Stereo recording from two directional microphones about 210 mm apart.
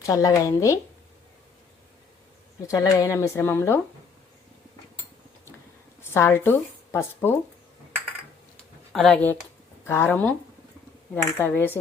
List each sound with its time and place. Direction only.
0.0 s speech: 15° left (ahead or behind)
2.6 s speech: 15° left (ahead or behind)
6.0 s speech: 10° left (ahead or behind)
8.9 s speech: 5° left (ahead or behind)